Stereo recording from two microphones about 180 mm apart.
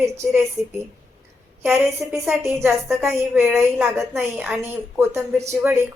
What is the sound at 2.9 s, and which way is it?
A woman's voice, centre (ahead or behind).